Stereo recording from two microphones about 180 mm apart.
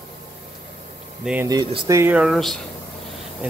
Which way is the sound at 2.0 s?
5° right (ahead or behind).